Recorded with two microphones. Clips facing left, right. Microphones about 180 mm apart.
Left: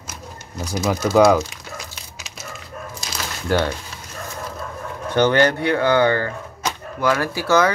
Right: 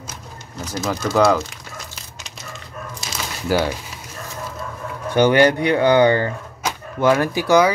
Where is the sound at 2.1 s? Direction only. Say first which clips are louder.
Left 2 dB; 5° left (ahead or behind).